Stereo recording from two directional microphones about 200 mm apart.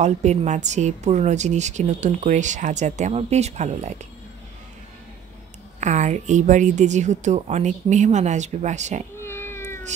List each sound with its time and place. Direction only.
0.0 s a woman's voice: 35° right (ahead or behind)
5.8 s a woman's voice: 35° right (ahead or behind)
9.2 s cat: 10° left (ahead or behind)